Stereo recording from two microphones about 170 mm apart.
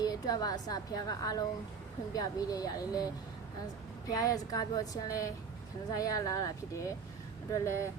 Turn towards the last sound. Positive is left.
turn(degrees=20)  # may be behind; listen again after turning